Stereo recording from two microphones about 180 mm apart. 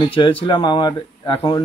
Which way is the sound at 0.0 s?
30° left (ahead or behind).